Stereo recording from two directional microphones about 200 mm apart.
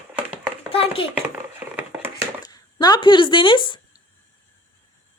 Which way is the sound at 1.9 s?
10° right (ahead or behind).